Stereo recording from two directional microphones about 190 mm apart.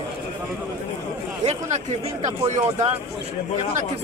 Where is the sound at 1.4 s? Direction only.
35° right (ahead or behind).